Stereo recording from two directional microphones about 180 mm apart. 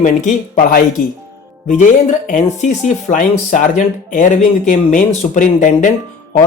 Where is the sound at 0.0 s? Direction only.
45° left (ahead or behind).